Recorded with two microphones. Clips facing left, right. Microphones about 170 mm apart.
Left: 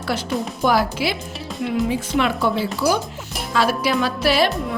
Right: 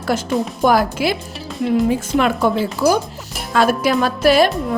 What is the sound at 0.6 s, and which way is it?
A woman's voice, 50° right (ahead or behind).